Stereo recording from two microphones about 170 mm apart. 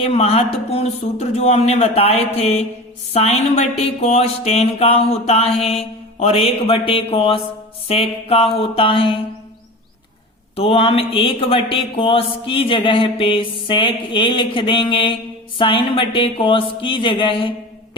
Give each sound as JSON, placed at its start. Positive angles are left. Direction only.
{"t": 0.0, "sound": "speech", "side_deg": 35}
{"t": 10.5, "sound": "speech", "side_deg": 35}